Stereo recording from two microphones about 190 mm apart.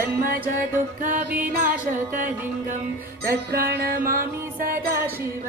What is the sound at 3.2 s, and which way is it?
Music, 55° right (ahead or behind).